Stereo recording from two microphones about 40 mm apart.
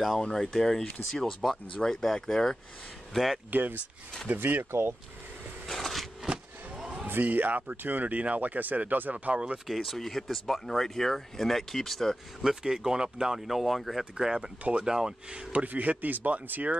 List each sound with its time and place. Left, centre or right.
0.2 s speech: centre
3.4 s speech: right
4.6 s speech: right
5.8 s a sound: centre
6.8 s a sound: centre
7.2 s speech: right
7.7 s speech: right
9.1 s speech: right
9.7 s speech: centre
12.4 s speech: centre
14.1 s speech: centre
14.6 s speech: right
14.9 s speech: centre
15.5 s speech: right